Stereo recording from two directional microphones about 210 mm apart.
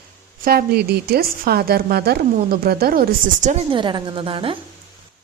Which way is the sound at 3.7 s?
25° right (ahead or behind).